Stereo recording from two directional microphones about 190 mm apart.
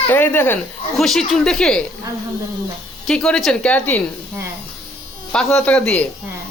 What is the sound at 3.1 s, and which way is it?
Speech, centre (ahead or behind).